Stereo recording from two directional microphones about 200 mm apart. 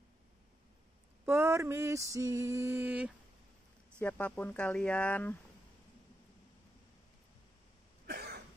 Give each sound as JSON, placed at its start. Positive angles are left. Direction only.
{"t": 1.2, "sound": "mantra", "side_deg": -10}
{"t": 4.0, "sound": "speech", "side_deg": 10}
{"t": 8.1, "sound": "cough", "side_deg": -50}